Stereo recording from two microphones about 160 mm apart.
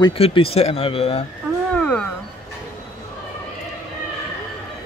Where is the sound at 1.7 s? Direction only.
5° left (ahead or behind).